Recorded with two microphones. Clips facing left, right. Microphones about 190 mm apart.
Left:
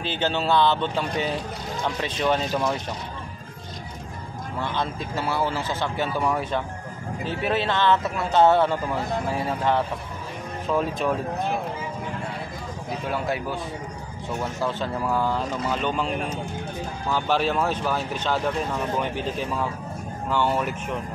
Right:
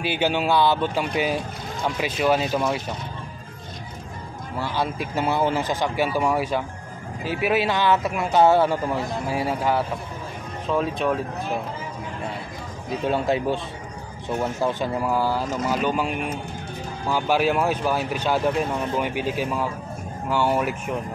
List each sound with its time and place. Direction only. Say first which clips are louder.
0.0 s speech: right 3 dB; 10° right (ahead or behind)
4.6 s speech: right 2 dB; 10° right (ahead or behind)
13.1 s speech: right 5 dB; 25° right (ahead or behind)
14.6 s speech: right 3 dB; 15° right (ahead or behind)
17.1 s speech: right 2 dB; 10° right (ahead or behind)